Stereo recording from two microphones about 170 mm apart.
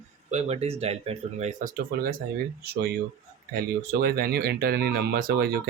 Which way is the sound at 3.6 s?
65° right (ahead or behind).